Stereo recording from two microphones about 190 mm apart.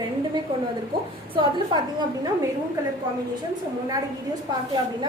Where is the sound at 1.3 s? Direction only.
25° right (ahead or behind).